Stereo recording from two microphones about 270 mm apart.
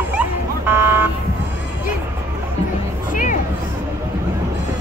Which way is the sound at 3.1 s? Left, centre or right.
Left.